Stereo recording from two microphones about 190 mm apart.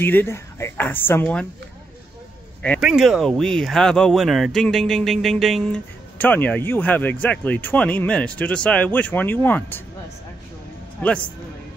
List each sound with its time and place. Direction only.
0.0 s speech: 10° left (ahead or behind)
2.8 s speech: 5° right (ahead or behind)
11.0 s a man's voice: 5° left (ahead or behind)